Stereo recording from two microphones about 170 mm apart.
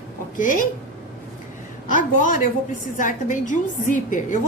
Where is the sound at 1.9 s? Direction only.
50° left (ahead or behind).